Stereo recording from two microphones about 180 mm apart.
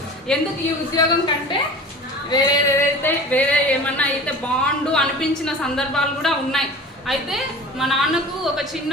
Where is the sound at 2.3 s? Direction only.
15° left (ahead or behind).